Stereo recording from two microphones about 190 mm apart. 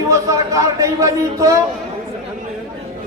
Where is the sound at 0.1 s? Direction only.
15° right (ahead or behind).